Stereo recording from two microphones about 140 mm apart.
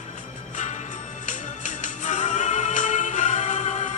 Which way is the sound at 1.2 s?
60° left (ahead or behind).